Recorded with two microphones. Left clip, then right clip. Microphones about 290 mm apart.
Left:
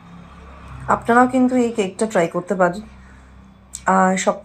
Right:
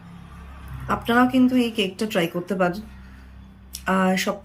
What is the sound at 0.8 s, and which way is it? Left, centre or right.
Speech, centre.